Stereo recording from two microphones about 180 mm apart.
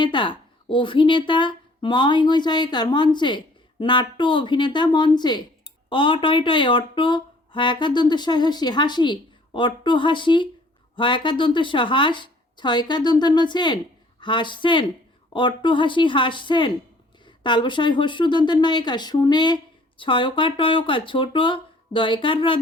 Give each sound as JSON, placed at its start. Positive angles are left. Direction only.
{"t": 0.0, "sound": "speech", "side_deg": 25}